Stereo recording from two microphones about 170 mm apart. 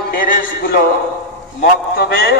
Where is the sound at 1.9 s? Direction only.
65° left (ahead or behind).